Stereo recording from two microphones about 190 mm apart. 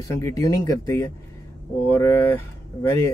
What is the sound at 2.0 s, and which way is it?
Speech, 15° left (ahead or behind).